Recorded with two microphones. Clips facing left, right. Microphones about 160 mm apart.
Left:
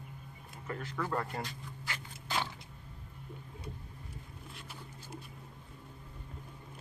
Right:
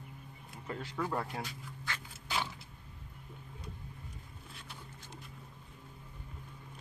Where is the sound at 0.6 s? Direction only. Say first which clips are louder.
Even; 15° right (ahead or behind).